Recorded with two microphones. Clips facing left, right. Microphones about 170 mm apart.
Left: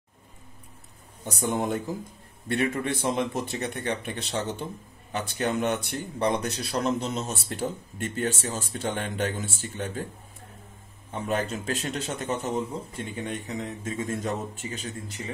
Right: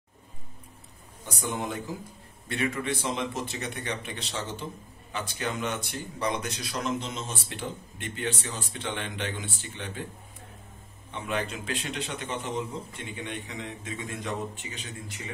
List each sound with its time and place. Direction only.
1.2 s a man's voice: 55° left (ahead or behind)
6.4 s a man's voice: 35° left (ahead or behind)
11.1 s a man's voice: 45° left (ahead or behind)